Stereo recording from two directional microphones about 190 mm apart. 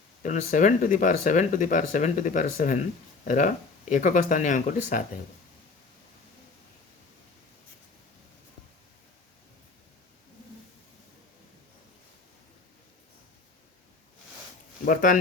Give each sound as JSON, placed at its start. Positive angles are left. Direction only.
{"t": 0.2, "sound": "speech", "side_deg": 45}
{"t": 14.8, "sound": "speech", "side_deg": 45}